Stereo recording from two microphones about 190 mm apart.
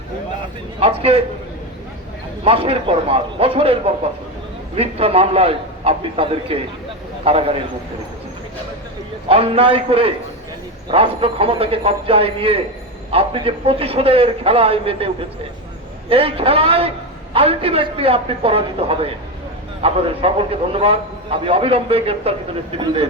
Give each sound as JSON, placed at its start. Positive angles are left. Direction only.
{"t": 0.8, "sound": "a man's voice", "side_deg": -30}
{"t": 2.4, "sound": "a man's voice", "side_deg": -30}
{"t": 9.3, "sound": "a man's voice", "side_deg": -30}